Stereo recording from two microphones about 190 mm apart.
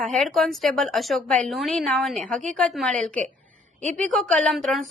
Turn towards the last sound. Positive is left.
turn(degrees=0)  # may be behind; listen again after turning